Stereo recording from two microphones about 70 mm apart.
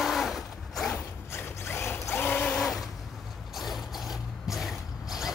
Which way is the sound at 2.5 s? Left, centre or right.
Centre.